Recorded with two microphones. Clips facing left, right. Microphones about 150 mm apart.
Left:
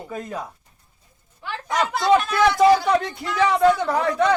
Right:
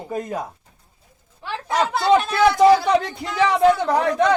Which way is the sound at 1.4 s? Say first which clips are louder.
Right 2 dB; 30° right (ahead or behind).